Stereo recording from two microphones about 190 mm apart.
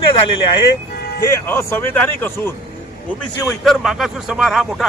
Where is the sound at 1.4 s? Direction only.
15° left (ahead or behind).